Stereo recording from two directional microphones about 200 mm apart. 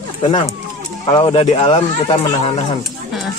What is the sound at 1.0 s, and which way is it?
Speech, 25° left (ahead or behind).